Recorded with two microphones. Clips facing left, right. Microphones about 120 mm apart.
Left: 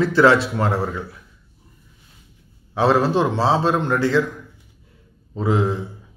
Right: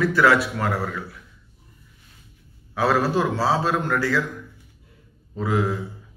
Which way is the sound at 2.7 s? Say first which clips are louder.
Left 4 dB; 25° left (ahead or behind).